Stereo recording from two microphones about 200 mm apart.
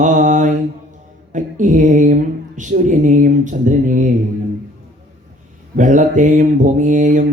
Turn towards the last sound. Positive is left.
turn(degrees=-40)  # may be behind; listen again after turning